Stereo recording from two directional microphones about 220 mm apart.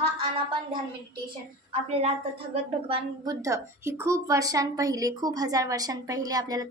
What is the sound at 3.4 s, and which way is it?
A woman's voice, 15° right (ahead or behind).